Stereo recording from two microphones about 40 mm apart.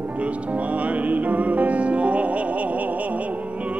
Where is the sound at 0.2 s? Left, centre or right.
Right.